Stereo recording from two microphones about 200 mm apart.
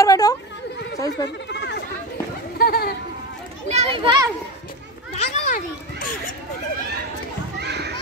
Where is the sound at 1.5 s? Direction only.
60° left (ahead or behind).